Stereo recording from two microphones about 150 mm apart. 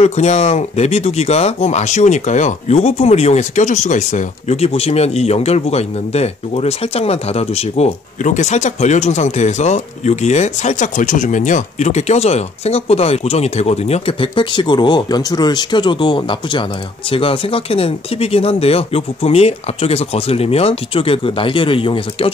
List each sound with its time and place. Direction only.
0.0 s speech: 45° left (ahead or behind)